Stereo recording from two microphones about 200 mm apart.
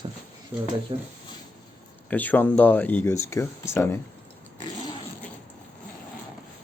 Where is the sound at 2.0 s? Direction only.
10° left (ahead or behind).